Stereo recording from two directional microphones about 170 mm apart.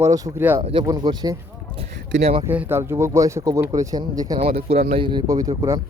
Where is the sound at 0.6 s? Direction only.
35° right (ahead or behind).